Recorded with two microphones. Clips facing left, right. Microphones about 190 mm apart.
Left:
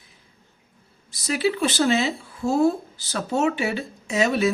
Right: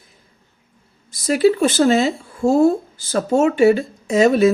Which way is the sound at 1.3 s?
45° right (ahead or behind).